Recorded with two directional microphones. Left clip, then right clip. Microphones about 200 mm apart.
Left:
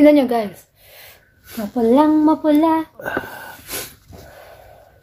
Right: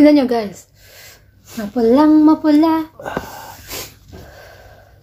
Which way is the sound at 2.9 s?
20° left (ahead or behind).